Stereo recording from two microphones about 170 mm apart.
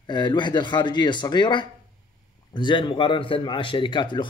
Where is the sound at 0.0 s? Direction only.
25° left (ahead or behind).